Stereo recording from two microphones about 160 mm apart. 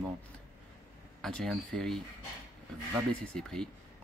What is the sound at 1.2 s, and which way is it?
Speech, centre (ahead or behind).